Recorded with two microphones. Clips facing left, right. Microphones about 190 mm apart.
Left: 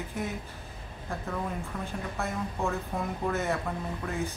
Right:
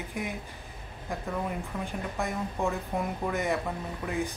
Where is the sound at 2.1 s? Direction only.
15° right (ahead or behind).